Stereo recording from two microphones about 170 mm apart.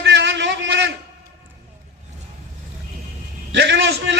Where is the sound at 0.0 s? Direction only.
90° right.